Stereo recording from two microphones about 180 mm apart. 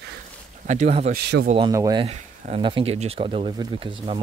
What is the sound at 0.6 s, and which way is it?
Speech, 40° right (ahead or behind).